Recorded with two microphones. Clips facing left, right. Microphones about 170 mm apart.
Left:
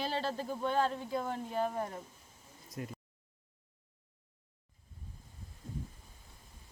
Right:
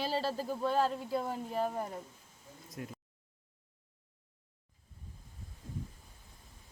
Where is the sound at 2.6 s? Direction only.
Centre (ahead or behind).